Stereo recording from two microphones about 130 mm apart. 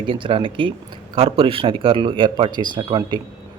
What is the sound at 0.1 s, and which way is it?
Speech, 45° right (ahead or behind).